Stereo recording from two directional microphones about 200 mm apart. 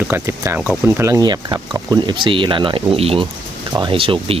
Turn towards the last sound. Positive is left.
turn(degrees=-25)  # may be behind; listen again after turning